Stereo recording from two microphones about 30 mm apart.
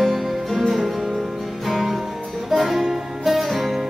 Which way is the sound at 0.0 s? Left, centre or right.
Centre.